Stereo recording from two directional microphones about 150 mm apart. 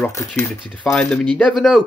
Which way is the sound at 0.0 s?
20° left (ahead or behind).